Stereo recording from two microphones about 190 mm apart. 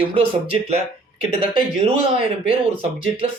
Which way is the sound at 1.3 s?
30° right (ahead or behind).